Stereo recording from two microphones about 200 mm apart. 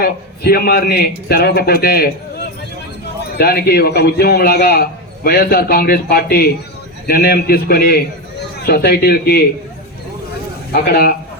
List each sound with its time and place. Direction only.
0.0 s a man's voice: 50° left (ahead or behind)
3.3 s a man's voice: 50° left (ahead or behind)
10.7 s a man's voice: 50° left (ahead or behind)